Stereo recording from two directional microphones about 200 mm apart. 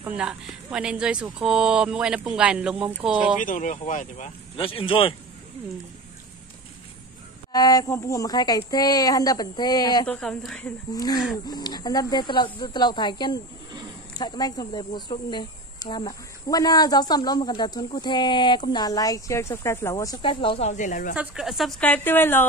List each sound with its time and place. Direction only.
0.0 s speech: 5° right (ahead or behind)
3.4 s speech: 40° left (ahead or behind)
4.6 s speech: 25° left (ahead or behind)
7.5 s speech: 20° left (ahead or behind)
10.0 s speech: 5° left (ahead or behind)
10.9 s speech: 20° left (ahead or behind); by 21.1 s 40° left (ahead or behind)
21.2 s a woman's voice: centre (ahead or behind)